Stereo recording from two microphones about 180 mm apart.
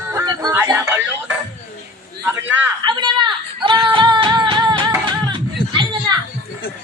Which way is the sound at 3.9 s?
25° right (ahead or behind).